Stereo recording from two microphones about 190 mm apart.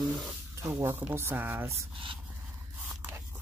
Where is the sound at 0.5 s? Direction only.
15° right (ahead or behind).